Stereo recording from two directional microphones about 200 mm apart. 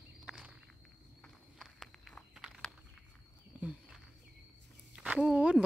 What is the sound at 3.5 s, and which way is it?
Wild animals, centre (ahead or behind).